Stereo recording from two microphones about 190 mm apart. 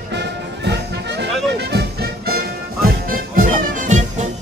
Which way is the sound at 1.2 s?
60° right (ahead or behind).